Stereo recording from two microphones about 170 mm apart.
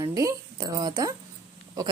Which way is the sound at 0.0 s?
20° right (ahead or behind).